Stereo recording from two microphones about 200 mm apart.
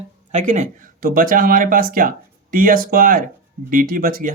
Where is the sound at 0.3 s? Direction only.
40° right (ahead or behind).